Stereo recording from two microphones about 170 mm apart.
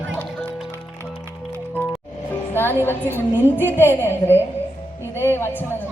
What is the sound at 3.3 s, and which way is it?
A man's voice, 10° left (ahead or behind).